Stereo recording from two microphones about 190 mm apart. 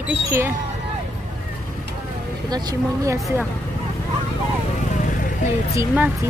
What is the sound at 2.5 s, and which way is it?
Speech, 20° right (ahead or behind).